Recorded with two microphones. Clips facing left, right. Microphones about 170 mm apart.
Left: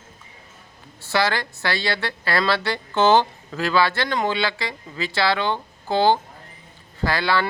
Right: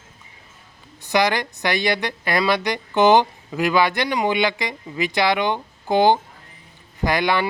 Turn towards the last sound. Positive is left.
turn(degrees=-15)  # may be behind; listen again after turning